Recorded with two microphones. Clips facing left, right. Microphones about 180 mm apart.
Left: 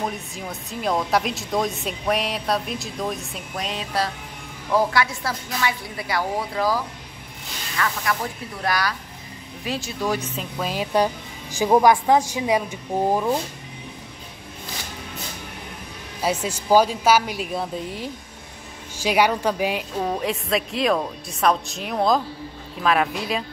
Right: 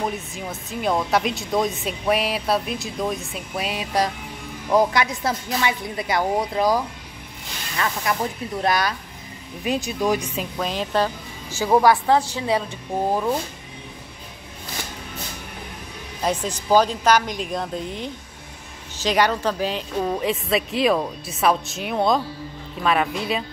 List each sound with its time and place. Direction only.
0.5 s speech: centre (ahead or behind)
10.6 s a woman's voice: 10° left (ahead or behind)
16.2 s a woman's voice: 10° left (ahead or behind)
20.1 s speech: centre (ahead or behind)